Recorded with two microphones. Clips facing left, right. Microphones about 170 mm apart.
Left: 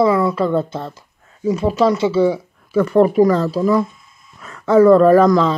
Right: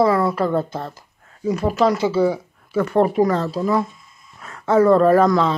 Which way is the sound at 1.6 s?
25° left (ahead or behind).